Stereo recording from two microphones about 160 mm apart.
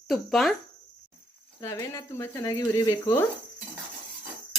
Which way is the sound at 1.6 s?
20° left (ahead or behind).